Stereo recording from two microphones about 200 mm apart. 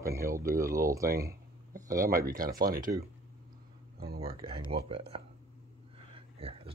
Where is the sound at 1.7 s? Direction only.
45° right (ahead or behind).